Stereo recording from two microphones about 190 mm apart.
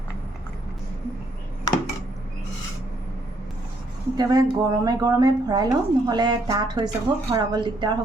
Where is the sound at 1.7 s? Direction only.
20° left (ahead or behind).